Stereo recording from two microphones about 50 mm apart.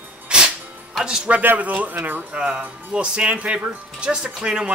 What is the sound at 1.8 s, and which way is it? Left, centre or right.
Speech, right.